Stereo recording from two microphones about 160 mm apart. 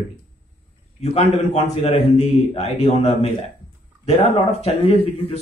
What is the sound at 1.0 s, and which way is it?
Speech, 45° left (ahead or behind).